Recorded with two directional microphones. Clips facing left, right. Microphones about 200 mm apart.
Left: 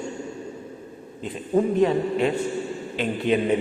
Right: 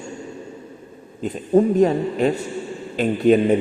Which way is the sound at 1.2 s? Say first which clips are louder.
Right 5 dB; 45° right (ahead or behind).